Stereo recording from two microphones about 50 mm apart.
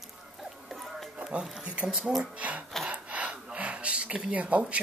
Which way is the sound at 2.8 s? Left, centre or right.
Right.